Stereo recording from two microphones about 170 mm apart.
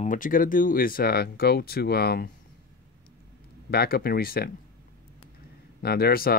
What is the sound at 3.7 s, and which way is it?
Speech, 65° left (ahead or behind).